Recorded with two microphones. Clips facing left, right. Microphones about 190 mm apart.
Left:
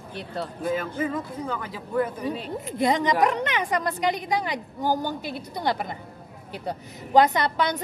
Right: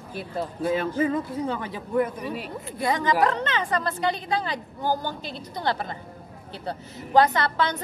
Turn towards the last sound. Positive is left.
turn(degrees=15)  # may be behind; listen again after turning